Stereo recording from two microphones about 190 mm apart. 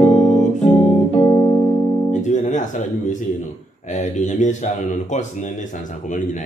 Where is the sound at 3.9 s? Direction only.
35° left (ahead or behind).